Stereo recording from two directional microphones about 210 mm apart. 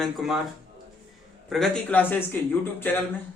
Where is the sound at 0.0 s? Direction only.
Centre (ahead or behind).